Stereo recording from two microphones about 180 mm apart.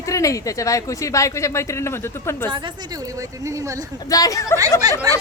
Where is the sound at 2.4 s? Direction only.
25° right (ahead or behind).